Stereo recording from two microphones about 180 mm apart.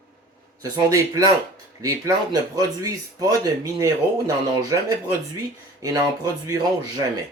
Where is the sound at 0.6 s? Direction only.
20° right (ahead or behind).